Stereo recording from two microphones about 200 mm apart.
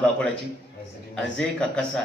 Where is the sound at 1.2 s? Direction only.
5° left (ahead or behind).